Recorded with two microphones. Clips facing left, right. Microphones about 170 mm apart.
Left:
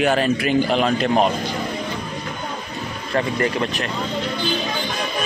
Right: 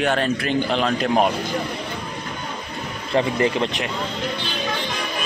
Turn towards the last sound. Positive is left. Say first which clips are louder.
# right 1 dB
turn(degrees=-20)  # may be behind; listen again after turning